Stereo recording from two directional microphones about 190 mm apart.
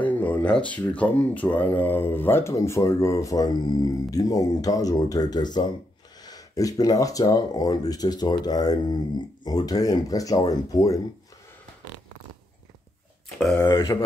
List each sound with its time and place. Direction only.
0.0 s a sound: 10° left (ahead or behind)
0.6 s speech: 5° left (ahead or behind)
13.6 s speech: 20° left (ahead or behind)